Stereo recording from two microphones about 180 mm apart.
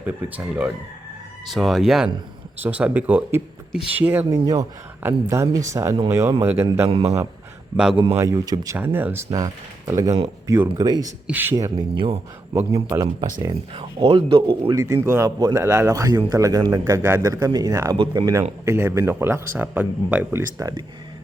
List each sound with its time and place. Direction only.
0.0 s speech: 10° right (ahead or behind)
6.8 s a man's voice: 35° right (ahead or behind)
8.1 s speech: 15° right (ahead or behind)
12.5 s speech: 15° right (ahead or behind)
14.7 s speech: 15° right (ahead or behind)